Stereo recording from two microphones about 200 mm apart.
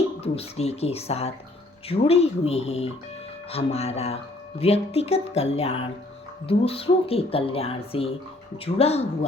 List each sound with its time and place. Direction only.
0.2 s speech: 30° left (ahead or behind)